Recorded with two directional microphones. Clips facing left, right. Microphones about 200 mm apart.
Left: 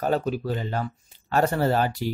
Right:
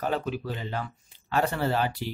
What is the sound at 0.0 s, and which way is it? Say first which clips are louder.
Speech: left 5 dB; 40° left (ahead or behind).